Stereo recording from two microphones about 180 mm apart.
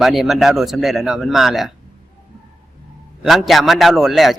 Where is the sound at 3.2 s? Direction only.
Centre (ahead or behind).